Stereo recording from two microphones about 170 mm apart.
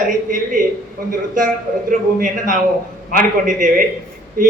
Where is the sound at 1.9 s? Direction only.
50° right (ahead or behind).